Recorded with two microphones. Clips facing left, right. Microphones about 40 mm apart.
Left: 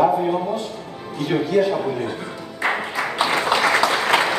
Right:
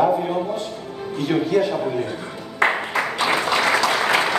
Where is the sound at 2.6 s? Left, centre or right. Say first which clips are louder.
Right 3 dB; right.